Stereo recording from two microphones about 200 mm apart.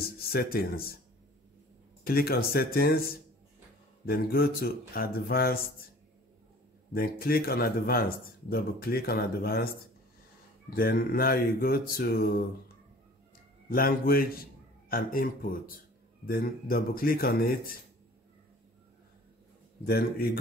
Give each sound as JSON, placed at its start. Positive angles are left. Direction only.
{"t": 0.0, "sound": "speech", "side_deg": 50}
{"t": 2.0, "sound": "mantra", "side_deg": 50}
{"t": 6.9, "sound": "mantra", "side_deg": 50}
{"t": 13.7, "sound": "a man's voice", "side_deg": 45}
{"t": 16.3, "sound": "mantra", "side_deg": 45}
{"t": 19.8, "sound": "mantra", "side_deg": 50}